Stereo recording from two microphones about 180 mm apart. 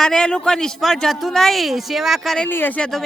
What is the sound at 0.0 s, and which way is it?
A woman's voice, 5° left (ahead or behind).